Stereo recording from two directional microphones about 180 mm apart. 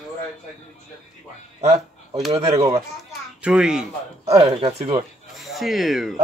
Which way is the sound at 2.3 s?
20° right (ahead or behind).